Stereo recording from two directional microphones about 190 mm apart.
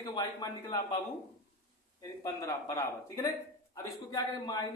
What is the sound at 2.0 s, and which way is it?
A man's voice, 15° left (ahead or behind).